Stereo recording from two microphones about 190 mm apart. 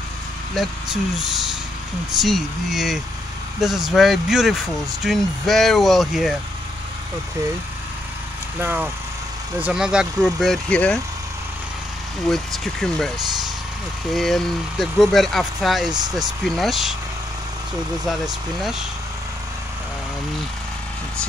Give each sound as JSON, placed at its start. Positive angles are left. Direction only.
{"t": 0.6, "sound": "speech", "side_deg": 0}
{"t": 8.5, "sound": "speech", "side_deg": -10}
{"t": 12.3, "sound": "speech", "side_deg": 0}
{"t": 14.1, "sound": "speech", "side_deg": 0}
{"t": 15.9, "sound": "speech", "side_deg": -20}
{"t": 16.3, "sound": "speech", "side_deg": 0}
{"t": 18.0, "sound": "speech", "side_deg": 0}